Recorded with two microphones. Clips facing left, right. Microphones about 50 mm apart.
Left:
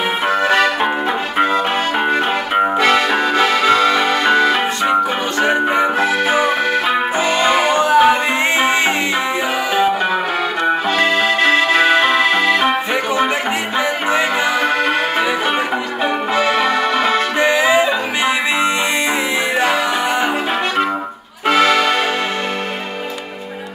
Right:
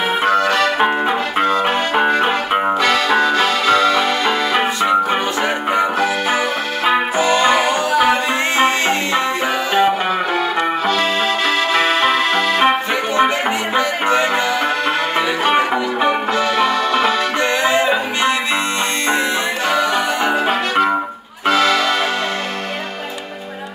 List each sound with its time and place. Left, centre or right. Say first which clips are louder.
0.4 s accordion: left 2 dB; centre
2.8 s music: even; left
5.5 s music: left 4 dB; centre
7.3 s music: left 2 dB; centre
10.9 s accordion: left 2 dB; left
11.8 s music: left 2 dB; centre
13.7 s music: right 1 dB; centre
16.3 s music: left 1 dB; left
17.4 s music: left 4 dB; centre
21.5 s accordion: left 2 dB; centre